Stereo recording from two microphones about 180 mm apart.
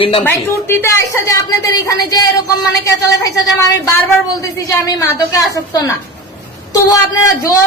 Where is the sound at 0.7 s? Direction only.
15° left (ahead or behind).